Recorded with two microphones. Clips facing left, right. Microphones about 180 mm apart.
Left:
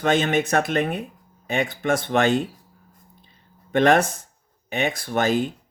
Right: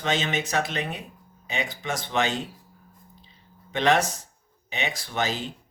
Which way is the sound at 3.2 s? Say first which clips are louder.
Right 1 dB; 50° left (ahead or behind).